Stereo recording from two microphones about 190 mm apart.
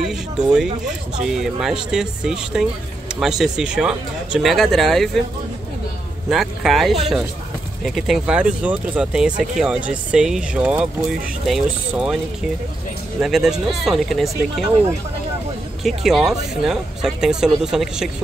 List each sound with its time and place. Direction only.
0.0 s speech: 5° right (ahead or behind)
6.2 s speech: centre (ahead or behind)
13.2 s speech: centre (ahead or behind)
15.8 s speech: centre (ahead or behind)